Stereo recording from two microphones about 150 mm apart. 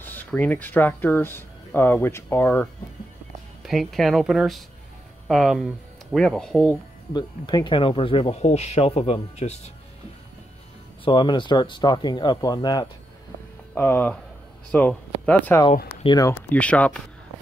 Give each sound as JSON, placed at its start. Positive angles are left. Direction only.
{"t": 0.0, "sound": "speech", "side_deg": 10}
{"t": 3.6, "sound": "speech", "side_deg": 0}
{"t": 7.2, "sound": "speech", "side_deg": 30}
{"t": 11.1, "sound": "speech", "side_deg": 30}
{"t": 13.7, "sound": "speech", "side_deg": 15}
{"t": 16.0, "sound": "speech", "side_deg": 30}
{"t": 16.3, "sound": "speech", "side_deg": 15}